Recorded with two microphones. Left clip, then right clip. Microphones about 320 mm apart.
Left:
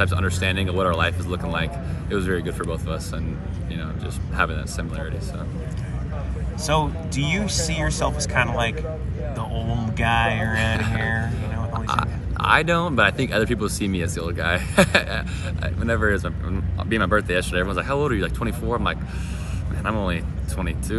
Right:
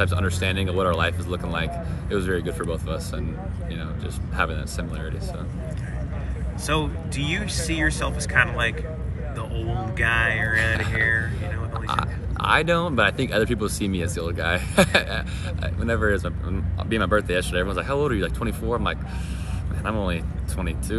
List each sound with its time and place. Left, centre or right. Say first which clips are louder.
0.0 s speech: left 2 dB; centre
4.4 s speech: left 2 dB; centre
6.6 s speech: left 3 dB; centre
10.0 s speech: even; centre